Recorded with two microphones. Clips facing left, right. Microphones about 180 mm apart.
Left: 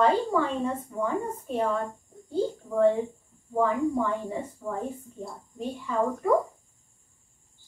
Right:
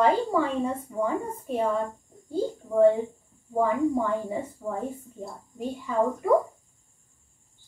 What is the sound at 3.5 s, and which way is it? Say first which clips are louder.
Speech: right 1 dB; 10° right (ahead or behind).